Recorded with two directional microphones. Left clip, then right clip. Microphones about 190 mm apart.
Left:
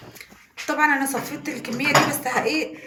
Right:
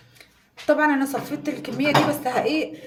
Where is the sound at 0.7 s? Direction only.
55° right (ahead or behind).